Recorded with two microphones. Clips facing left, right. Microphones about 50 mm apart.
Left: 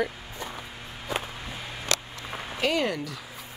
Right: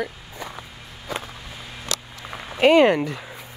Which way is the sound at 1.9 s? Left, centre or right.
Left.